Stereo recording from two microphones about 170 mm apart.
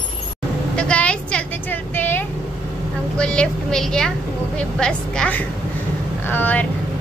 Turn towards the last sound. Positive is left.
turn(degrees=10)  # may be behind; listen again after turning